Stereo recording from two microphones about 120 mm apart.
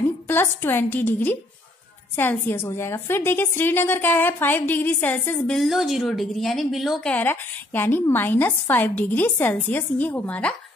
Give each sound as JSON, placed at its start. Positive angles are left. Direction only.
{"t": 0.3, "sound": "a woman's voice", "side_deg": 20}
{"t": 5.5, "sound": "a woman's voice", "side_deg": 0}
{"t": 7.1, "sound": "a woman's voice", "side_deg": 15}